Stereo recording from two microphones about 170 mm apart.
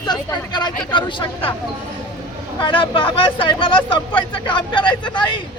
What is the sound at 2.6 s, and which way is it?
Speech, 30° left (ahead or behind).